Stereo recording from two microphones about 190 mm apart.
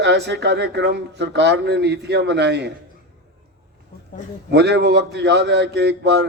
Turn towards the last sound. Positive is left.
turn(degrees=-65)  # may be behind; listen again after turning